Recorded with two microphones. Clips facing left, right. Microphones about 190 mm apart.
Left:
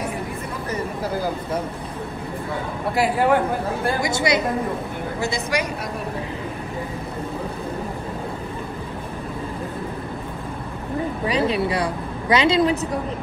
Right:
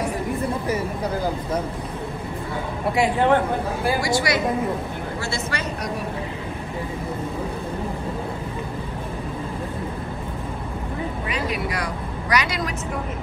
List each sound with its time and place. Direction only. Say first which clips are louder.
2.9 s a man's voice: even; 5° left (ahead or behind)
4.0 s a woman's voice: left 1 dB; 20° left (ahead or behind)
11.2 s a woman's voice: left 8 dB; 30° left (ahead or behind)